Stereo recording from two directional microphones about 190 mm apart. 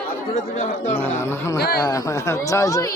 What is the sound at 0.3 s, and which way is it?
Speech, 40° left (ahead or behind).